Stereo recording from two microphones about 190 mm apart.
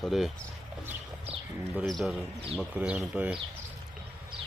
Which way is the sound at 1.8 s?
Centre (ahead or behind).